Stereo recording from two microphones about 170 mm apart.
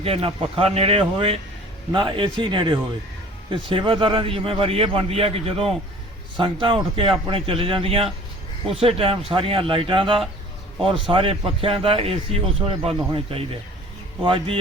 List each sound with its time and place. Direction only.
0.0 s a man's voice: 35° right (ahead or behind)